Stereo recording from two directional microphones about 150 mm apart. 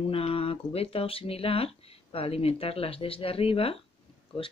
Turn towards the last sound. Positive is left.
turn(degrees=40)  # may be behind; listen again after turning